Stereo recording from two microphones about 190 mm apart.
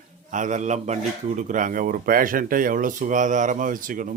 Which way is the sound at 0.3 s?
40° right (ahead or behind).